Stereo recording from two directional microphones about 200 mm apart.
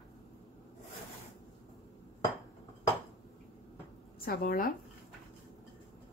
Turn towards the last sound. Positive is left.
turn(degrees=45)  # may be behind; listen again after turning